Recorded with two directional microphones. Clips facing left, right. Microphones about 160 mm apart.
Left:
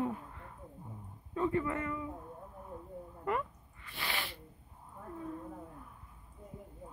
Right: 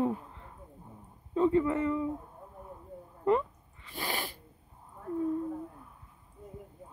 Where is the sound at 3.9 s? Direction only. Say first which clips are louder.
Right 4 dB; 40° right (ahead or behind).